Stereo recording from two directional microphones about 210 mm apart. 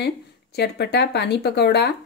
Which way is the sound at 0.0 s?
50° left (ahead or behind).